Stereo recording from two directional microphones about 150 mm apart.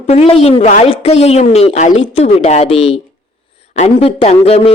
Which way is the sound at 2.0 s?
40° left (ahead or behind).